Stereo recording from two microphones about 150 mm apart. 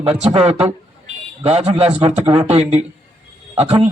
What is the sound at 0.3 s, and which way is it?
Speech, 45° right (ahead or behind).